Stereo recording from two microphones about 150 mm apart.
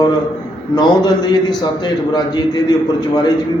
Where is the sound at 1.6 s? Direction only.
30° left (ahead or behind).